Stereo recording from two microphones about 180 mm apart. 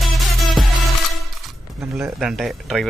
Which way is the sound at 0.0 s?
Centre (ahead or behind).